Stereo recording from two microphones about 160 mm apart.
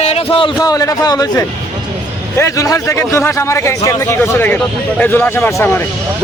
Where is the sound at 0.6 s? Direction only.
20° left (ahead or behind).